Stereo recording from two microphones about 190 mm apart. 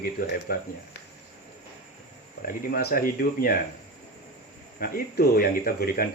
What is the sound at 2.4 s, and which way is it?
Speech, 50° left (ahead or behind).